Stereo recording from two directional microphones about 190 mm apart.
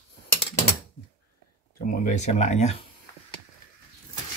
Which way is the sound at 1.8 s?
45° left (ahead or behind).